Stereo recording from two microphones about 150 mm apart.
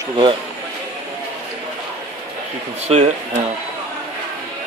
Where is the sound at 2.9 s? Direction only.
45° right (ahead or behind).